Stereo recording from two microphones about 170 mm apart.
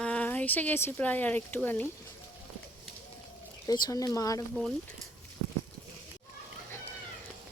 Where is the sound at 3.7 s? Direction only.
20° left (ahead or behind).